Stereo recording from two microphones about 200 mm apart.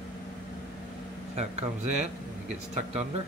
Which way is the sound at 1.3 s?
35° right (ahead or behind).